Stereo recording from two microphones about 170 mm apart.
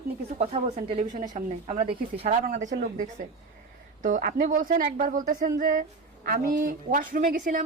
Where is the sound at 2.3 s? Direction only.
50° right (ahead or behind).